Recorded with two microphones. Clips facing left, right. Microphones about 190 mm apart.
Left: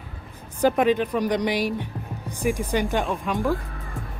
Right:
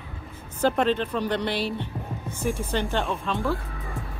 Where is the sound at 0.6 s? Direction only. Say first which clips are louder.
Left 3 dB; 10° left (ahead or behind).